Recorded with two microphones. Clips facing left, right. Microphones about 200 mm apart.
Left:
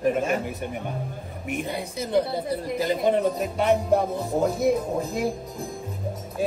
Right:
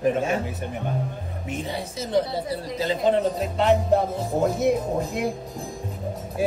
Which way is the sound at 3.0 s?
15° left (ahead or behind).